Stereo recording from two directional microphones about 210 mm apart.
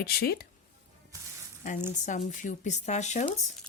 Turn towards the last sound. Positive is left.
turn(degrees=35)  # may be behind; listen again after turning